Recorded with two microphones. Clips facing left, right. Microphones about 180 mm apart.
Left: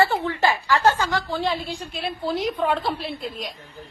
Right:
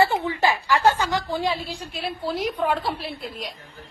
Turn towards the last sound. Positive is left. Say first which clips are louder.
# left 2 dB
turn(degrees=-5)  # may be behind; listen again after turning